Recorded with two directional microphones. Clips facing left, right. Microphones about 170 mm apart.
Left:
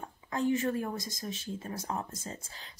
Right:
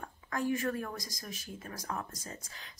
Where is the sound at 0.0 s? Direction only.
20° left (ahead or behind).